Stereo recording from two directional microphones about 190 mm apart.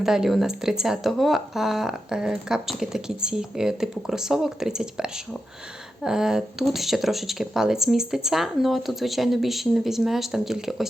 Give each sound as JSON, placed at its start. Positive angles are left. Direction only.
{"t": 0.0, "sound": "speech", "side_deg": 0}